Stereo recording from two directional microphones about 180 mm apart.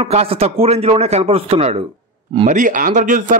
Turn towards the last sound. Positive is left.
turn(degrees=-45)  # may be behind; listen again after turning